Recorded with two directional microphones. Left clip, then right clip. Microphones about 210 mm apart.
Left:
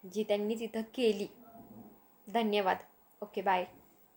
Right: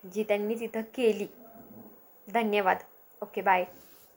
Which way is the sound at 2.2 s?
15° left (ahead or behind).